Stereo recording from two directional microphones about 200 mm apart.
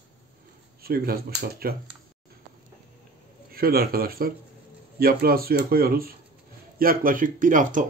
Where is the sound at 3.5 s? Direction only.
50° right (ahead or behind).